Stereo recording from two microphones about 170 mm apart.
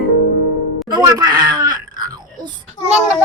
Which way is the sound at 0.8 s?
25° right (ahead or behind).